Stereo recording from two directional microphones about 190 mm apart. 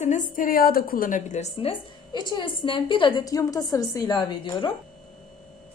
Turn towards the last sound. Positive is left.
turn(degrees=25)  # may be behind; listen again after turning